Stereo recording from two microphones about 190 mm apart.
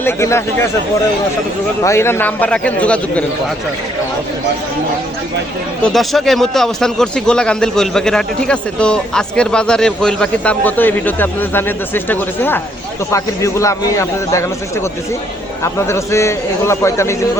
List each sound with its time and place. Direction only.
0.0 s a man's voice: 15° left (ahead or behind)
1.8 s a man's voice: 15° left (ahead or behind)
5.8 s a man's voice: centre (ahead or behind)
15.6 s a man's voice: 15° left (ahead or behind)